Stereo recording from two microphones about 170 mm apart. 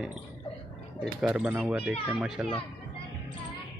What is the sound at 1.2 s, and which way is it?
Speech, 10° right (ahead or behind).